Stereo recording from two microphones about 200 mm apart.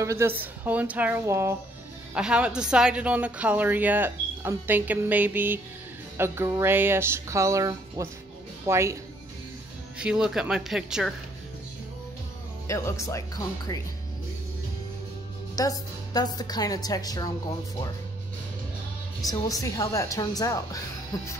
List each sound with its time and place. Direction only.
0.0 s a woman's voice: 15° right (ahead or behind)
9.9 s speech: 5° right (ahead or behind)
12.6 s speech: 15° left (ahead or behind)
15.5 s a woman's voice: 15° left (ahead or behind)
19.2 s speech: 15° left (ahead or behind)